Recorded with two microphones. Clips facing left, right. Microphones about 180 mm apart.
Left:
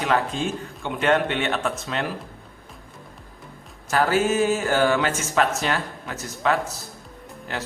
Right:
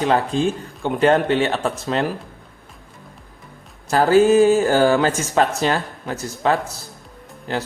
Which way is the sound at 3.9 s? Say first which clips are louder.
Right 7 dB; 35° right (ahead or behind).